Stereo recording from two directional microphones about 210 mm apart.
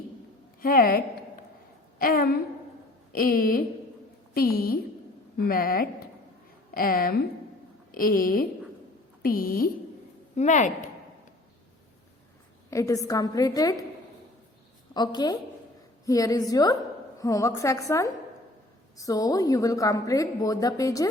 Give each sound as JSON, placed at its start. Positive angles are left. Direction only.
{"t": 0.6, "sound": "a woman's voice", "side_deg": 45}
{"t": 12.7, "sound": "a woman's voice", "side_deg": 15}
{"t": 14.9, "sound": "a woman's voice", "side_deg": 20}